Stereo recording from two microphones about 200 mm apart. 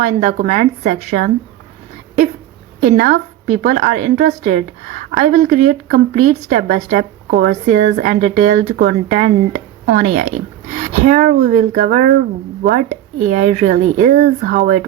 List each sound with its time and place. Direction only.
0.0 s speech: 35° right (ahead or behind)
2.8 s speech: 40° right (ahead or behind)